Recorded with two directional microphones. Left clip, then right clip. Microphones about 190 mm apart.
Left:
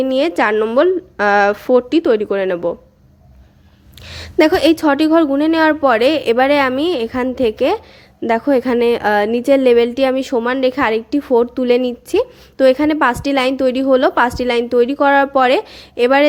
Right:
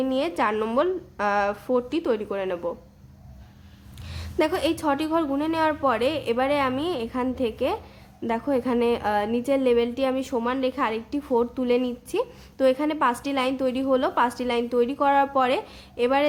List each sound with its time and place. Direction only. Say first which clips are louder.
0.0 s a woman's voice: left 9 dB; 30° left (ahead or behind)
4.0 s a woman's voice: left 11 dB; 30° left (ahead or behind)